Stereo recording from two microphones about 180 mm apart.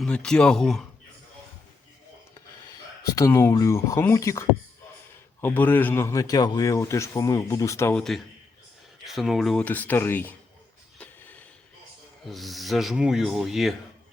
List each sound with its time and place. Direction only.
0.0 s speech: 5° left (ahead or behind)
3.0 s a man's voice: 15° left (ahead or behind)
9.0 s a man's voice: centre (ahead or behind)
10.9 s a sound: 10° left (ahead or behind)
12.3 s speech: centre (ahead or behind)